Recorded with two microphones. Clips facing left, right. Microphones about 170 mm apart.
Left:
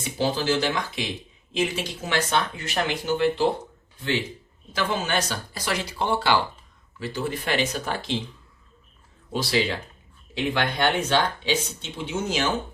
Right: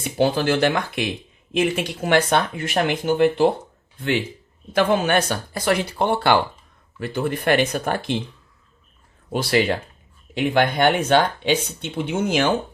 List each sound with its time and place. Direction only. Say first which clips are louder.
0.0 s speech: right 5 dB; 55° right (ahead or behind)
4.7 s speech: right 8 dB; 55° right (ahead or behind)
9.3 s speech: right 5 dB; 55° right (ahead or behind)